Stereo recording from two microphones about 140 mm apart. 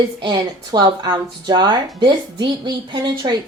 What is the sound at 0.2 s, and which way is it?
Speech, 30° right (ahead or behind).